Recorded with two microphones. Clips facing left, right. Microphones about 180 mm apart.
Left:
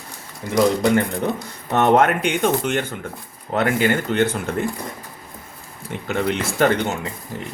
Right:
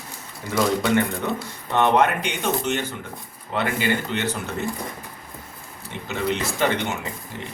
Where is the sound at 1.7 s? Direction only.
45° left (ahead or behind).